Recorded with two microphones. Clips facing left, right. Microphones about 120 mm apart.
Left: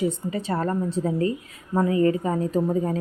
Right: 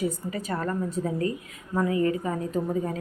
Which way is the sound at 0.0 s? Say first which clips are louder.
Left 4 dB; 25° left (ahead or behind).